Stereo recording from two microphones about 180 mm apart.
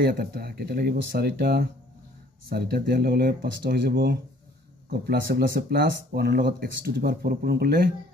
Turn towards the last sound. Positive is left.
turn(degrees=-60)  # may be behind; listen again after turning